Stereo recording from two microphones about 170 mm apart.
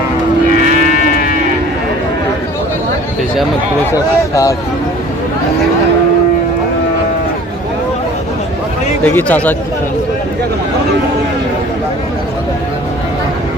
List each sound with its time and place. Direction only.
0.9 s moo: 55° left (ahead or behind)
9.0 s a man's voice: 10° left (ahead or behind)